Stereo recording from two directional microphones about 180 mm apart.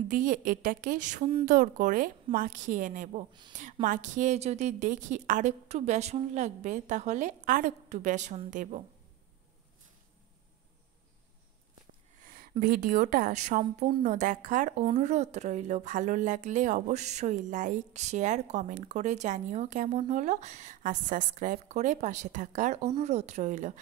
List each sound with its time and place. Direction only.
0.1 s a woman's voice: 45° right (ahead or behind)
12.2 s a woman's voice: 50° right (ahead or behind)